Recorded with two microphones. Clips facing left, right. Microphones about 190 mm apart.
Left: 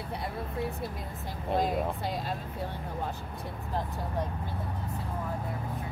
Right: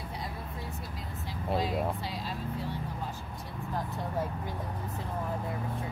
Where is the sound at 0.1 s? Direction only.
60° left (ahead or behind).